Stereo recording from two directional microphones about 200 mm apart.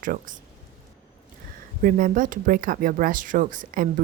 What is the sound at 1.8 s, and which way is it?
Speech, 40° right (ahead or behind).